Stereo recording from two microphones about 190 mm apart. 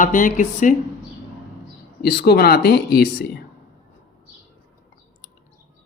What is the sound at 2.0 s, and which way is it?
Speech, 55° left (ahead or behind).